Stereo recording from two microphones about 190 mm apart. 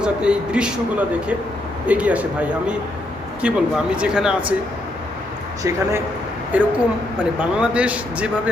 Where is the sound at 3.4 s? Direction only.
5° right (ahead or behind).